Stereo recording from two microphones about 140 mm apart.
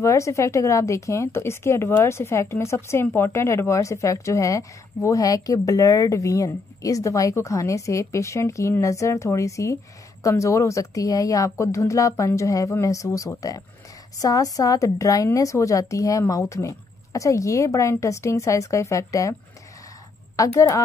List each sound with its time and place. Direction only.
0.0 s speech: 20° left (ahead or behind)
20.3 s speech: 20° left (ahead or behind)